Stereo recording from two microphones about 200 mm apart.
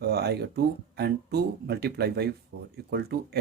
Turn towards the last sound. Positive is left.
turn(degrees=-55)  # may be behind; listen again after turning